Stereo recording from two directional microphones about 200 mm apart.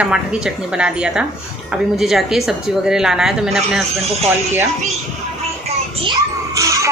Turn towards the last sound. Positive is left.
turn(degrees=-15)  # may be behind; listen again after turning